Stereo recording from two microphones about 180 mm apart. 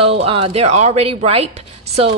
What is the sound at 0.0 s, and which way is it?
A woman's voice, 30° right (ahead or behind).